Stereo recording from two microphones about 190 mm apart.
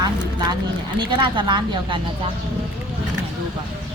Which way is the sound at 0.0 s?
20° right (ahead or behind).